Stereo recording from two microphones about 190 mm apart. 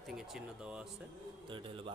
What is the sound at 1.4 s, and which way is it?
Speech, 25° right (ahead or behind).